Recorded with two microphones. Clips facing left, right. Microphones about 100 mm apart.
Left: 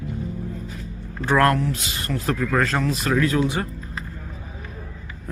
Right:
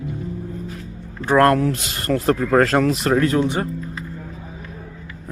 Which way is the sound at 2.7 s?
60° right (ahead or behind).